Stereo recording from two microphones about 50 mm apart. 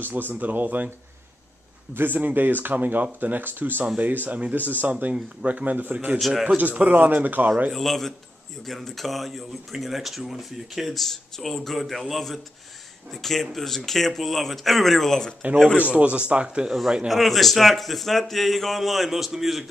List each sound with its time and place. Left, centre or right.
0.0 s speech: right
2.0 s speech: right
6.1 s speech: centre
6.4 s speech: right
7.7 s speech: centre
15.9 s speech: right
17.1 s speech: centre